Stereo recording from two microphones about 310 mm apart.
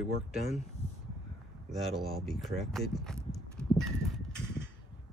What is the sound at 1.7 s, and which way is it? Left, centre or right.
Speech, centre.